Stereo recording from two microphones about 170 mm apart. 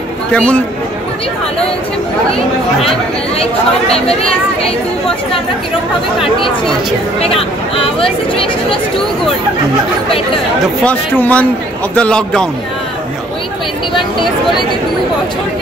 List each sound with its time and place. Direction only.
0.3 s speech: 5° left (ahead or behind)
7.2 s speech: 35° left (ahead or behind)
10.8 s a man's voice: 10° left (ahead or behind)